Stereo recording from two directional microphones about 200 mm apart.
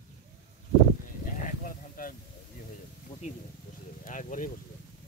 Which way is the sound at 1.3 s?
40° left (ahead or behind).